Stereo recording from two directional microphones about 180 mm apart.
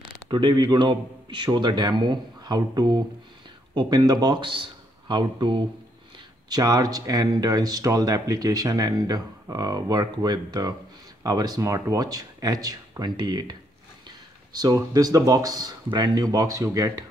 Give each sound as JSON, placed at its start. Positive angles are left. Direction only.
{"t": 0.3, "sound": "speech", "side_deg": -25}